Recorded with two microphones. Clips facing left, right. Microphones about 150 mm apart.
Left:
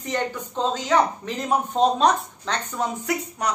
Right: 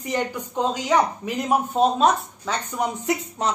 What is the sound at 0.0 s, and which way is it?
Speech, 10° right (ahead or behind).